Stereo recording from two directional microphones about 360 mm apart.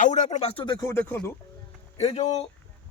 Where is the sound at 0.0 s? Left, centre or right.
Centre.